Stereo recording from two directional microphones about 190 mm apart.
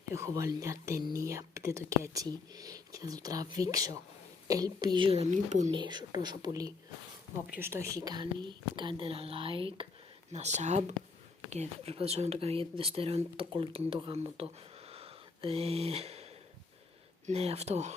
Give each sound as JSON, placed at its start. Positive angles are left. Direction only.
{"t": 0.1, "sound": "speech", "side_deg": -15}
{"t": 5.7, "sound": "speech", "side_deg": -25}